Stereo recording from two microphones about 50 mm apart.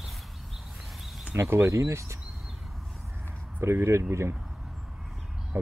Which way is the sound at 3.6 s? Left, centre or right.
Right.